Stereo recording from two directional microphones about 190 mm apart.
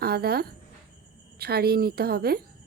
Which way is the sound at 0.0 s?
55° right (ahead or behind).